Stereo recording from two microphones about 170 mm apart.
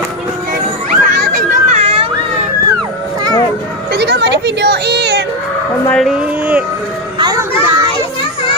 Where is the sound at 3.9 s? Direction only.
80° right.